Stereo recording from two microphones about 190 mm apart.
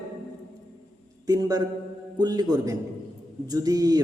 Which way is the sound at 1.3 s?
20° right (ahead or behind).